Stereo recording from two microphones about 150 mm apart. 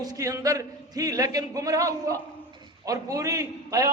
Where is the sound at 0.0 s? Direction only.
25° right (ahead or behind).